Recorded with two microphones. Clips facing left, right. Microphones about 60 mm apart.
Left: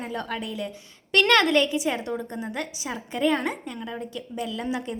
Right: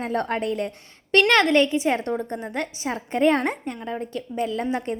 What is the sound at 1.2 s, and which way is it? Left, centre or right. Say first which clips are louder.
A woman's voice: even; right.